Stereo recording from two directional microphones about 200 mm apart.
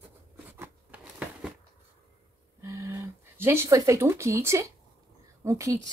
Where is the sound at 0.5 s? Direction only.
10° right (ahead or behind).